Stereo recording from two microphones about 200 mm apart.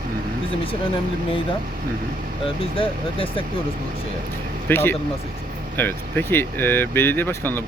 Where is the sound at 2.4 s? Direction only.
25° left (ahead or behind).